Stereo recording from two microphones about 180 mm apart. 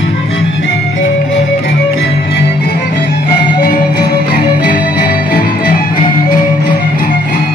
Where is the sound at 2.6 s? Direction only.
60° left (ahead or behind).